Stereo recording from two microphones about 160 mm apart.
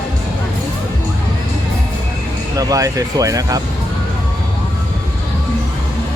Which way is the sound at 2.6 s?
20° right (ahead or behind).